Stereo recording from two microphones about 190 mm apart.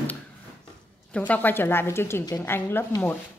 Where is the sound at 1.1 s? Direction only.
5° left (ahead or behind).